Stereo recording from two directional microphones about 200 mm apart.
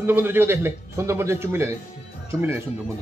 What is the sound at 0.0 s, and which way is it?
A man's voice, 10° right (ahead or behind).